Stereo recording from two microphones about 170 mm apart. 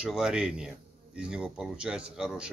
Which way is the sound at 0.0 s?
5° right (ahead or behind).